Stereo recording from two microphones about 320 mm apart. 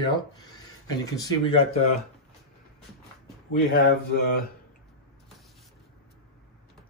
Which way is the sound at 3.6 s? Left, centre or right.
Left.